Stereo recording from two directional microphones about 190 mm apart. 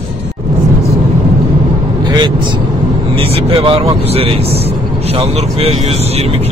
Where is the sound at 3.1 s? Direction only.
30° right (ahead or behind).